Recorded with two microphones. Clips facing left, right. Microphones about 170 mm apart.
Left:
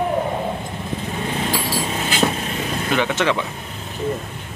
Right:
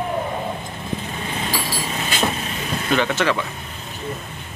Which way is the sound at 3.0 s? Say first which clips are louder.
Left 1 dB; 15° left (ahead or behind).